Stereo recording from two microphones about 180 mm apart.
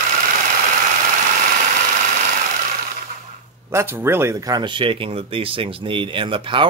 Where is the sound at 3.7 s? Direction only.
15° right (ahead or behind); by 6.6 s 30° right (ahead or behind).